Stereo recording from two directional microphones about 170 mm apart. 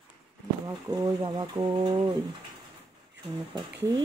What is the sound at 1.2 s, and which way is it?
Speech, 25° right (ahead or behind).